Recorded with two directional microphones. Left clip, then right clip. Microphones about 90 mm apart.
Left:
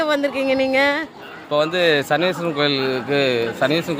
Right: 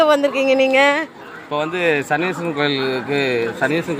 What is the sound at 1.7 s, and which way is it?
Speech, 45° left (ahead or behind).